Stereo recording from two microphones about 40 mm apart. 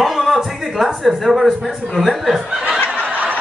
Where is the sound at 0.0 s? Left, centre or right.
Centre.